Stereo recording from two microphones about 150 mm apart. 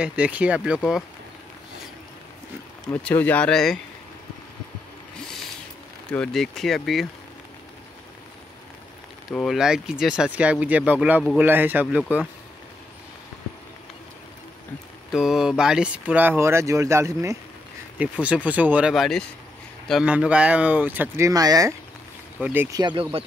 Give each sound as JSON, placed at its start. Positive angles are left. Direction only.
{"t": 0.0, "sound": "speech", "side_deg": -10}
{"t": 2.9, "sound": "speech", "side_deg": 10}
{"t": 6.1, "sound": "speech", "side_deg": 5}
{"t": 9.3, "sound": "speech", "side_deg": 0}
{"t": 15.0, "sound": "speech", "side_deg": -5}
{"t": 21.3, "sound": "speech", "side_deg": -25}
{"t": 22.4, "sound": "speech", "side_deg": -15}
{"t": 22.8, "sound": "speech", "side_deg": -35}